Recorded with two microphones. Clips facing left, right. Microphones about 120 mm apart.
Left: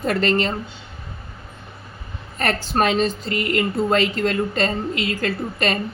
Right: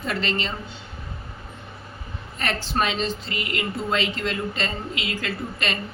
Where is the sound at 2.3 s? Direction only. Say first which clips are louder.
Left 4 dB; 45° left (ahead or behind).